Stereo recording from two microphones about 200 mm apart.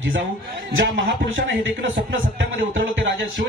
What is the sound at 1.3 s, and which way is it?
Speech, 70° right (ahead or behind).